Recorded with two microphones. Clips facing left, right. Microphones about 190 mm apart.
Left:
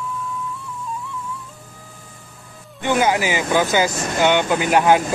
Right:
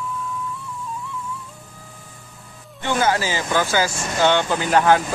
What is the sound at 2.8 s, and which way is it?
Speech, 15° left (ahead or behind).